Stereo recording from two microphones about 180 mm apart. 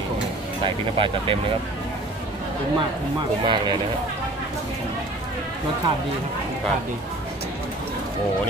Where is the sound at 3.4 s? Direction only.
25° right (ahead or behind).